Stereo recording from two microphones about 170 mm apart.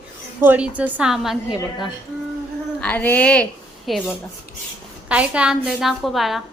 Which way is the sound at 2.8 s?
10° left (ahead or behind).